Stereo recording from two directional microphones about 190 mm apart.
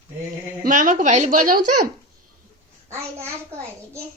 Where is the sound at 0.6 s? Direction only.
45° right (ahead or behind).